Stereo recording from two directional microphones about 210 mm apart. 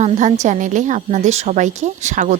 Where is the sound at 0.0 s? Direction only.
35° right (ahead or behind).